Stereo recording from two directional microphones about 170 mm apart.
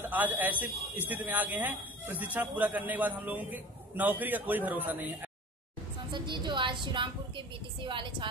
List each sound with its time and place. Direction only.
0.0 s a man's voice: 10° right (ahead or behind)
6.1 s a woman's voice: 25° right (ahead or behind)